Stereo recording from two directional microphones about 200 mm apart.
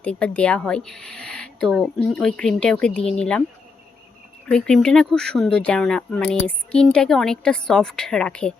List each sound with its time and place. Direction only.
0.0 s speech: 5° left (ahead or behind)
4.4 s speech: 5° left (ahead or behind)